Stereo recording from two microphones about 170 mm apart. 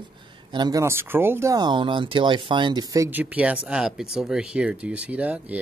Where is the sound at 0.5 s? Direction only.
25° right (ahead or behind).